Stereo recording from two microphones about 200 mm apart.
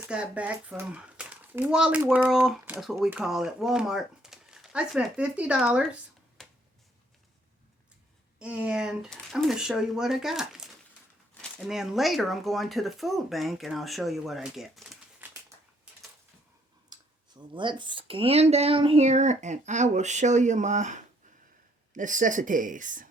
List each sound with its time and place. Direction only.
0.1 s speech: 5° right (ahead or behind)
8.4 s speech: 5° right (ahead or behind)
15.5 s a sound: 15° right (ahead or behind)
16.9 s speech: 25° right (ahead or behind); by 23.0 s 40° right (ahead or behind)